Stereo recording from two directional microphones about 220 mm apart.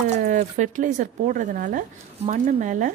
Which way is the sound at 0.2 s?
35° right (ahead or behind).